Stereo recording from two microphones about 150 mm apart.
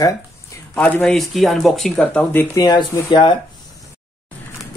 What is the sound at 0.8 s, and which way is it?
Speech, 10° left (ahead or behind).